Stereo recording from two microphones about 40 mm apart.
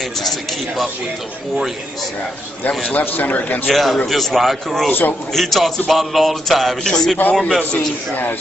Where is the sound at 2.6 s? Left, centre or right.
Left.